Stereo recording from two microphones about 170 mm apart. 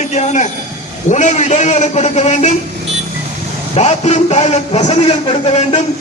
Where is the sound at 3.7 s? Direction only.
40° left (ahead or behind).